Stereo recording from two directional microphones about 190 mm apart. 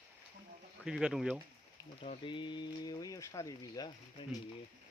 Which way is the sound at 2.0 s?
30° left (ahead or behind).